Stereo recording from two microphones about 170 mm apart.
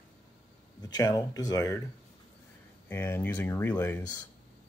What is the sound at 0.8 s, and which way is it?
Speech, 20° left (ahead or behind).